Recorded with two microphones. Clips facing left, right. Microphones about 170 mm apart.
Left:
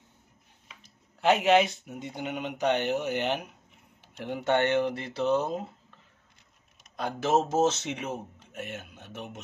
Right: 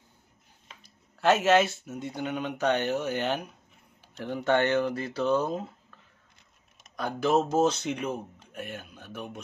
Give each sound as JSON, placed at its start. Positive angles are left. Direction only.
{"t": 0.8, "sound": "speech", "side_deg": 15}
{"t": 7.0, "sound": "speech", "side_deg": 25}